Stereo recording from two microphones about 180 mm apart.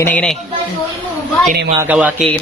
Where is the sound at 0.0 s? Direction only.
5° left (ahead or behind).